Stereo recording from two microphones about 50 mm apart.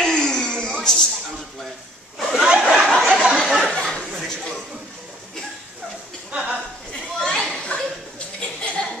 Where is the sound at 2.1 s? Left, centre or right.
Centre.